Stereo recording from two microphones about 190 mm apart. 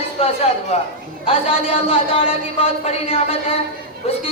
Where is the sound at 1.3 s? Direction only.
30° left (ahead or behind).